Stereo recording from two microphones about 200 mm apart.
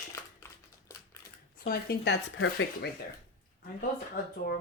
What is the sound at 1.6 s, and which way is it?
Speech, 50° left (ahead or behind).